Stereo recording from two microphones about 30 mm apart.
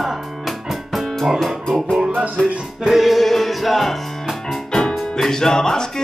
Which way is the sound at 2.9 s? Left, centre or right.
Centre.